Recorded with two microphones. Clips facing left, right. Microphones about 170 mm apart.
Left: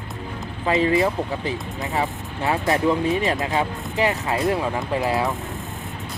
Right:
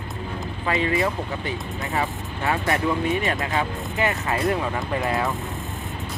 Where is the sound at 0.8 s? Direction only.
30° left (ahead or behind).